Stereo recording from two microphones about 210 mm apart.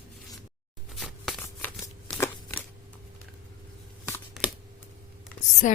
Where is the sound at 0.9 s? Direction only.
5° left (ahead or behind).